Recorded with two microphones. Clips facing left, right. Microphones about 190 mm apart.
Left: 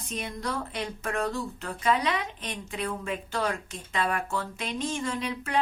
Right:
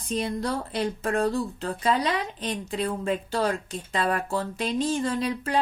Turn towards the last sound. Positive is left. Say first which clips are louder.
# right 5 dB
turn(degrees=-35)  # may be behind; listen again after turning